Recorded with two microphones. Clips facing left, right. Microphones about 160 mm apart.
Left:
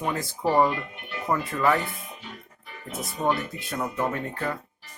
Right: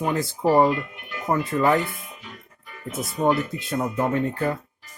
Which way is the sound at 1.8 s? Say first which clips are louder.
Right 2 dB; 30° left (ahead or behind).